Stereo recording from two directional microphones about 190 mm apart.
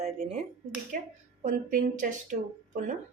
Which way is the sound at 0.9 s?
50° right (ahead or behind).